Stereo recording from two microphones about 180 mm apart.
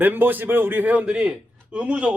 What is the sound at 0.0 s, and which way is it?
A man's voice, 10° right (ahead or behind).